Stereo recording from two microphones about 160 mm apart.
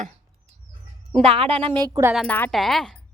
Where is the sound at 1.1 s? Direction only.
40° right (ahead or behind).